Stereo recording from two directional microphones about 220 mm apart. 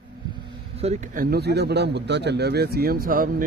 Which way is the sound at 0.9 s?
40° right (ahead or behind).